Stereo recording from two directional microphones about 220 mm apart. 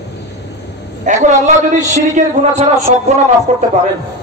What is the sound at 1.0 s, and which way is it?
A man's voice, 35° right (ahead or behind).